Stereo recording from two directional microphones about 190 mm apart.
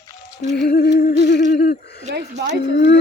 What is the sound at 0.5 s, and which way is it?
Humming, 55° left (ahead or behind).